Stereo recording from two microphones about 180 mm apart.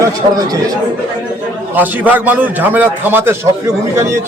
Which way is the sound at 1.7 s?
10° right (ahead or behind).